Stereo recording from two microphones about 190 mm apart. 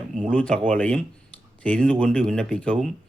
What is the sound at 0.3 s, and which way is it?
Speech, 5° left (ahead or behind).